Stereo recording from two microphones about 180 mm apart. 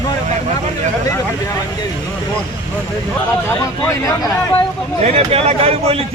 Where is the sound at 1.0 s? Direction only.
20° left (ahead or behind).